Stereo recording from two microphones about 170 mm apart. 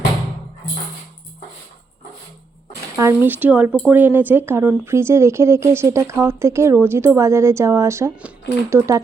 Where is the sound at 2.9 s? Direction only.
15° right (ahead or behind).